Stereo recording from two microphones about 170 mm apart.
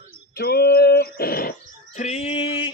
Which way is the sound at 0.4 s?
65° left (ahead or behind).